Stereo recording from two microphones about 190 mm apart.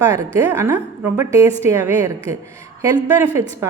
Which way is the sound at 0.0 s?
15° right (ahead or behind).